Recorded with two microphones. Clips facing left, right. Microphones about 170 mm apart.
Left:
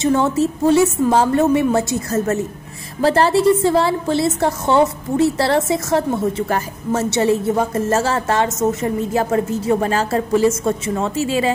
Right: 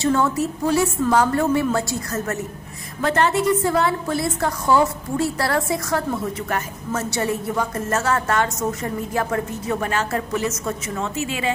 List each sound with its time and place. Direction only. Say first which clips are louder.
0.0 s a woman's voice: left 4 dB; 25° left (ahead or behind)